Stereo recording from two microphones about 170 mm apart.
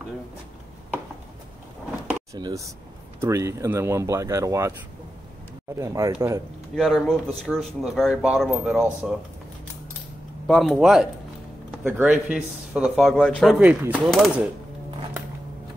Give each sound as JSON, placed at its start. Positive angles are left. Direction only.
{"t": 2.3, "sound": "speech", "side_deg": -20}
{"t": 5.8, "sound": "speech", "side_deg": -20}
{"t": 6.7, "sound": "speech", "side_deg": 0}
{"t": 10.4, "sound": "speech", "side_deg": 0}